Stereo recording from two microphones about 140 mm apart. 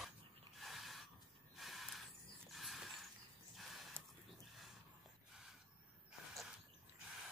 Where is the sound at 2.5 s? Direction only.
Centre (ahead or behind).